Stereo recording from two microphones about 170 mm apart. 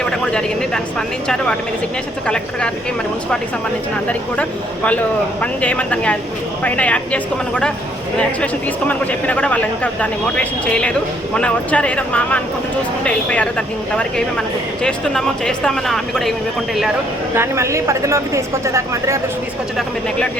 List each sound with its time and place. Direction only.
0.0 s a sound: 5° left (ahead or behind)
2.2 s speech: 5° left (ahead or behind)
4.4 s speech: 10° left (ahead or behind)
8.9 s speech: 10° left (ahead or behind)
17.3 s speech: 15° right (ahead or behind)